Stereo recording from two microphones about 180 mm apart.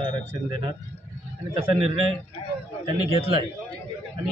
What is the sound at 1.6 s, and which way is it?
Speech, 30° right (ahead or behind).